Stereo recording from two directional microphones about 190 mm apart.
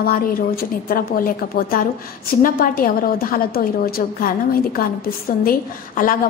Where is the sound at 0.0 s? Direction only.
50° left (ahead or behind).